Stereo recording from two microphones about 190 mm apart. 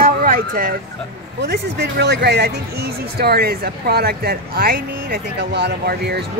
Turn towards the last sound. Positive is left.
turn(degrees=-60)  # may be behind; listen again after turning